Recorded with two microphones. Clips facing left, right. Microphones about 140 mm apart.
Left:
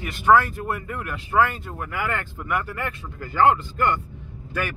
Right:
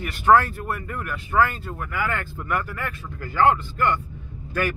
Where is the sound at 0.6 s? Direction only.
20° left (ahead or behind).